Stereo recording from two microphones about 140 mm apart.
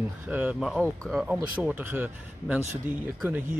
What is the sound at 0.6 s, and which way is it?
Speech, 5° left (ahead or behind).